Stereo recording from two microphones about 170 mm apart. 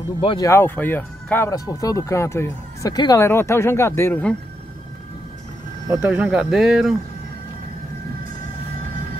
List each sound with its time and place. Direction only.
0.2 s speech: 30° left (ahead or behind)
0.5 s speech: 10° left (ahead or behind)
5.9 s speech: 5° right (ahead or behind)